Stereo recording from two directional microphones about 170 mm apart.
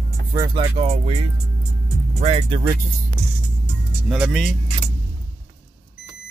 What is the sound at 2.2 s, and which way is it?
Speech, 35° right (ahead or behind).